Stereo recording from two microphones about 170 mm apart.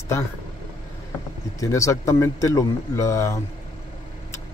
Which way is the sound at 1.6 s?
20° left (ahead or behind).